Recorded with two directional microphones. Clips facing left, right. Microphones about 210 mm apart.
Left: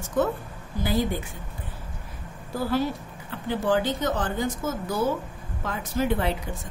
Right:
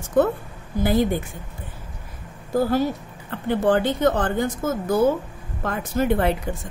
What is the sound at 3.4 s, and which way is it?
Speech, 60° right (ahead or behind).